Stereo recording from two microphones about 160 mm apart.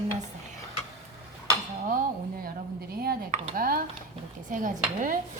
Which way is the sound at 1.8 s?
60° right (ahead or behind).